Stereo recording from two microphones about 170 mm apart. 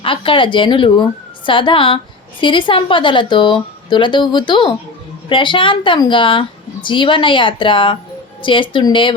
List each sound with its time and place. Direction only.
0.0 s speech: 30° left (ahead or behind)